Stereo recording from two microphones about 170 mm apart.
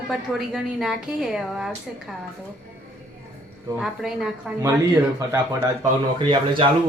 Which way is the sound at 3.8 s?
Centre (ahead or behind).